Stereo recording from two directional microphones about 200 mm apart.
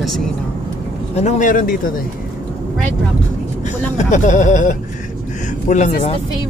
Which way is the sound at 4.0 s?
40° left (ahead or behind).